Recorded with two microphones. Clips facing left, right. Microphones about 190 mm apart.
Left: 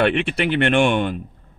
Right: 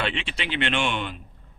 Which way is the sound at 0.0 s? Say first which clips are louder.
Left 11 dB; 55° left (ahead or behind).